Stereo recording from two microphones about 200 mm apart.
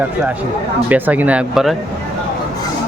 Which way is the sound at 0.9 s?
10° right (ahead or behind).